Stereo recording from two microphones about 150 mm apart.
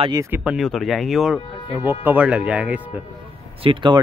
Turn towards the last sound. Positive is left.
turn(degrees=-35)  # may be behind; listen again after turning